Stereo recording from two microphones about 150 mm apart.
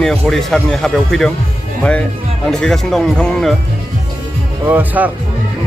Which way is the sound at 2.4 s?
5° left (ahead or behind).